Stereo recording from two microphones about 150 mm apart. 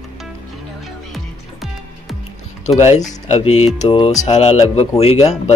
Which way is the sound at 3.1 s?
45° left (ahead or behind).